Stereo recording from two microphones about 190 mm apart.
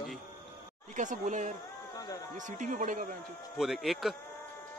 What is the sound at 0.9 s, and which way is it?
A man's voice, 40° right (ahead or behind).